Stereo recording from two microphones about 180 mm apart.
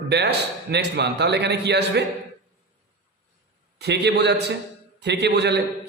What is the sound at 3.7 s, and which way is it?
A man's voice, 70° right (ahead or behind).